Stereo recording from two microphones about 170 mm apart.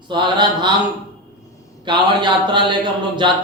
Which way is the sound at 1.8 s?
25° right (ahead or behind).